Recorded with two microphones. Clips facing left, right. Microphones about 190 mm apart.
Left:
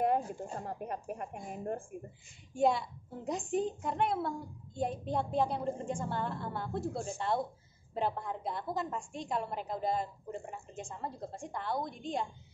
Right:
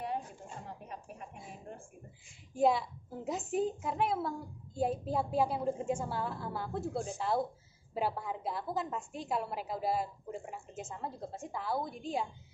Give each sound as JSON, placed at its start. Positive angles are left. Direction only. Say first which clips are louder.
{"t": 0.6, "sound": "speech", "louder": "left 7 dB", "side_deg": 55}
{"t": 2.5, "sound": "a woman's voice", "louder": "right 1 dB", "side_deg": 0}